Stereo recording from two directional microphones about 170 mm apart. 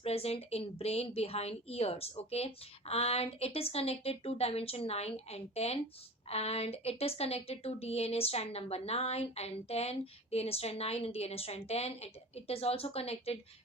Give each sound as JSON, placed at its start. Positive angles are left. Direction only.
{"t": 0.0, "sound": "a woman's voice", "side_deg": 35}